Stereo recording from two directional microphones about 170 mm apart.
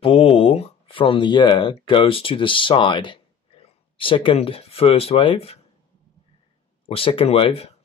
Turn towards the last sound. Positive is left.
turn(degrees=35)  # may be behind; listen again after turning